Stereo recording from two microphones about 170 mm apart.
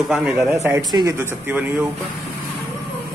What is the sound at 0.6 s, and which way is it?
Speech, 20° right (ahead or behind).